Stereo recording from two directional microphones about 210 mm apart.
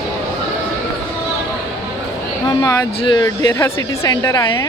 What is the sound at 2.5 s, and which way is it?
Speech, 15° left (ahead or behind).